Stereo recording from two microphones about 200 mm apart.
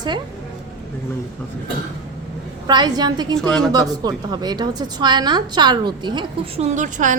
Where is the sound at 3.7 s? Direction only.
20° right (ahead or behind).